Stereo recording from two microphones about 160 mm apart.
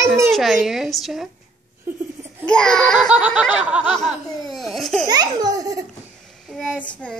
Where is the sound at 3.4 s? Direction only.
5° right (ahead or behind).